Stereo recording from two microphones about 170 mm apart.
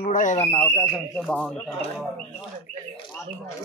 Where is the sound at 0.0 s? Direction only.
50° left (ahead or behind).